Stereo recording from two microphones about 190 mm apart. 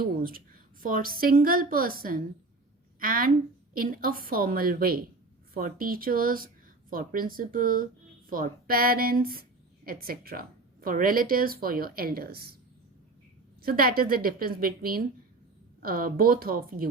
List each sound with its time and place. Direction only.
0.2 s a woman's voice: 50° right (ahead or behind)
13.6 s a woman's voice: 50° right (ahead or behind)